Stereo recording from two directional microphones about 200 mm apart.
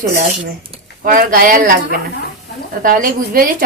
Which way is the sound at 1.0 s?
45° right (ahead or behind).